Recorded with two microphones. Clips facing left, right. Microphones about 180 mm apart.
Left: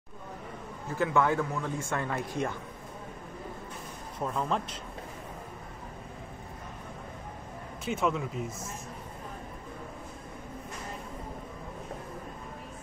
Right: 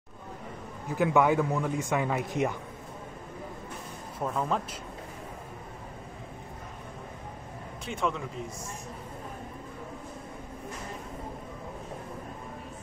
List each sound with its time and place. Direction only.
0.8 s a man's voice: 15° right (ahead or behind)
4.3 s speech: 5° right (ahead or behind)
7.8 s a man's voice: 5° left (ahead or behind)